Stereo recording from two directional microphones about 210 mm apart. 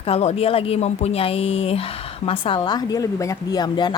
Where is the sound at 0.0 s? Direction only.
30° left (ahead or behind).